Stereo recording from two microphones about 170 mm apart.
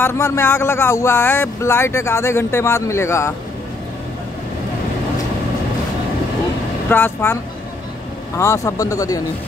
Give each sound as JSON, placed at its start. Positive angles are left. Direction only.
{"t": 0.0, "sound": "speech", "side_deg": 15}
{"t": 6.9, "sound": "speech", "side_deg": 15}
{"t": 8.4, "sound": "speech", "side_deg": 15}